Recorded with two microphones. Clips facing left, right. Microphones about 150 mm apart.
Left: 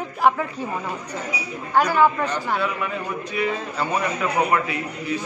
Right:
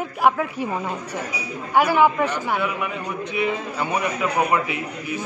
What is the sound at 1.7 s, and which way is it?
A man's voice, 10° right (ahead or behind).